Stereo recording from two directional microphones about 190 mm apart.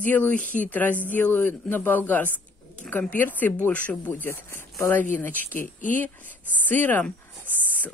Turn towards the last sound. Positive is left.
turn(degrees=10)  # may be behind; listen again after turning